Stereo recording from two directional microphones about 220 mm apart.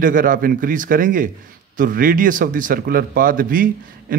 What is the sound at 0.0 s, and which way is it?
Speech, 40° right (ahead or behind).